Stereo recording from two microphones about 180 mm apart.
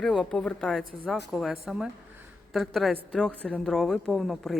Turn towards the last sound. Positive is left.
turn(degrees=0)  # may be behind; listen again after turning